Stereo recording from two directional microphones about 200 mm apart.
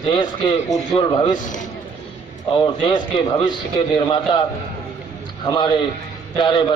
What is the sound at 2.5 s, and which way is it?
A man's voice, 25° left (ahead or behind).